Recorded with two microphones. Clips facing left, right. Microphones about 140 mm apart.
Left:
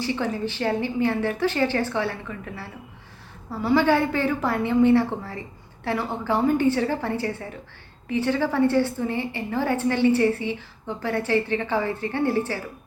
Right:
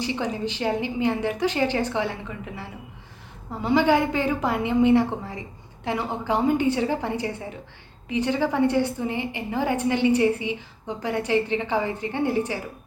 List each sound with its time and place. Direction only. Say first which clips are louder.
0.0 s a woman's voice: left 1 dB; 15° right (ahead or behind)